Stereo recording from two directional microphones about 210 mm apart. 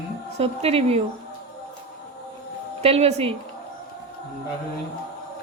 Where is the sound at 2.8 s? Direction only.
30° right (ahead or behind).